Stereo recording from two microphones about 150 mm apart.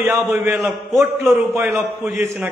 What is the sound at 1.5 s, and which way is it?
Speech, 15° right (ahead or behind).